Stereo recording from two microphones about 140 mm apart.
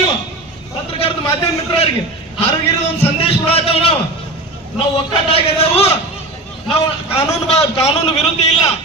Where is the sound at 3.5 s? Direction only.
45° left (ahead or behind).